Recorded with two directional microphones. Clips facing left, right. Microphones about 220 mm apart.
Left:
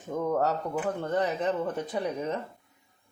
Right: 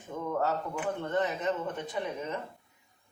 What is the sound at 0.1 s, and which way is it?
A woman's voice, 40° left (ahead or behind).